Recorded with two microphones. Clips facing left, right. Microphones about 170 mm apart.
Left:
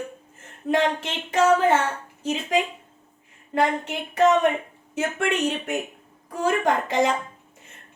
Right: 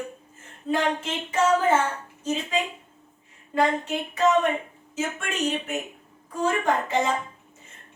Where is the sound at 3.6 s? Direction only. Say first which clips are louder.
Even; 70° left (ahead or behind).